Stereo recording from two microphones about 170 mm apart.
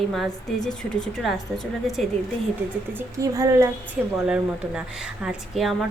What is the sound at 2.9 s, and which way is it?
Speech, 20° right (ahead or behind).